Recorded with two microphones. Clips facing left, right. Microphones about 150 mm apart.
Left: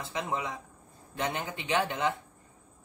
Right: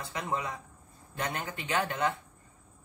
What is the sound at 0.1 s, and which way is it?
Speech, 20° left (ahead or behind).